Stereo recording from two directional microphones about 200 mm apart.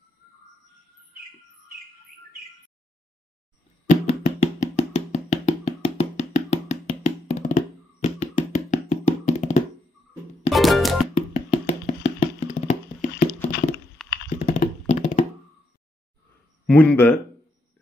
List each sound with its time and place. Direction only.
3.9 s music: 35° left (ahead or behind)
9.4 s thunk: 35° left (ahead or behind)
10.5 s music: centre (ahead or behind)
11.1 s a sound: 35° left (ahead or behind)
14.0 s computer keyboard: centre (ahead or behind)
14.3 s a sound: 40° left (ahead or behind)
16.6 s speech: 5° left (ahead or behind)